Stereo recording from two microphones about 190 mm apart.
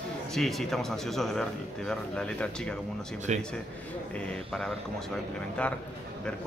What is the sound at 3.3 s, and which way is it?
Speech, 40° right (ahead or behind).